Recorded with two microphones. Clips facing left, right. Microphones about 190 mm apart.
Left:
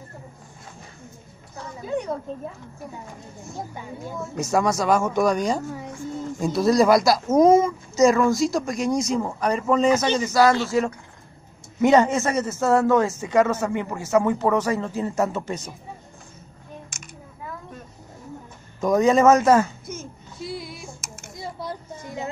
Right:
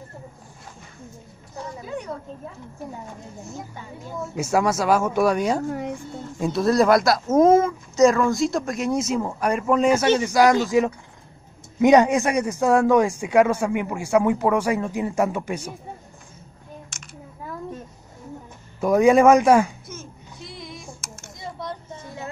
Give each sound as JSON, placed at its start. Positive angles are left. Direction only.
{"t": 4.4, "sound": "a man's voice", "side_deg": -5}
{"t": 11.8, "sound": "a man's voice", "side_deg": -15}
{"t": 18.8, "sound": "a man's voice", "side_deg": -10}
{"t": 19.9, "sound": "a sound", "side_deg": 10}